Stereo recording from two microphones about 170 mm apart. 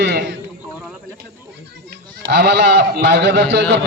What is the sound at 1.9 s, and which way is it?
A man's voice, 65° right (ahead or behind).